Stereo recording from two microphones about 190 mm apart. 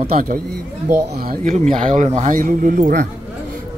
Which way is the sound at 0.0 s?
40° right (ahead or behind).